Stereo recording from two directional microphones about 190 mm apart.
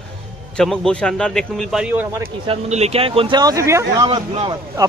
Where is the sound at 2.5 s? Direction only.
35° right (ahead or behind).